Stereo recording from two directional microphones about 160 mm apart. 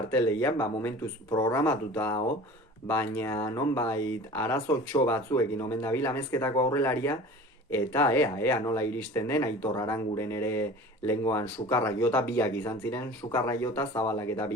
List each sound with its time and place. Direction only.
0.1 s speech: 10° left (ahead or behind)